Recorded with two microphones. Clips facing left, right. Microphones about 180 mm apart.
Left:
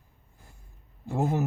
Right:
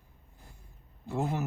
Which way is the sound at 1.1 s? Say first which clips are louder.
Left 5 dB; 45° left (ahead or behind).